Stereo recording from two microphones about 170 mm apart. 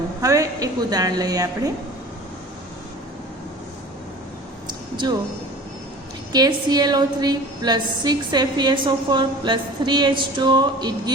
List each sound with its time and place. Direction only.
0.2 s a woman's voice: 20° right (ahead or behind)
6.3 s a woman's voice: 25° right (ahead or behind)